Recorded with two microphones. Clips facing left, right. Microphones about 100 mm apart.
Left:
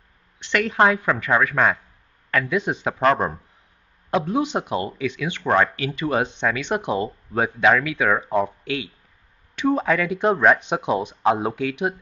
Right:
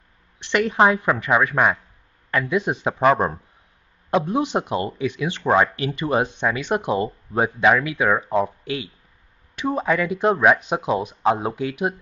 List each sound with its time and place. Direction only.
0.5 s speech: 20° right (ahead or behind)
4.6 s speech: 30° right (ahead or behind)
5.0 s speech: 15° right (ahead or behind)
6.6 s speech: 5° right (ahead or behind)
9.6 s speech: 5° right (ahead or behind)